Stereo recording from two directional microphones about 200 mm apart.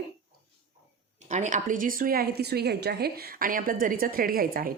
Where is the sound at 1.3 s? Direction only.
35° right (ahead or behind).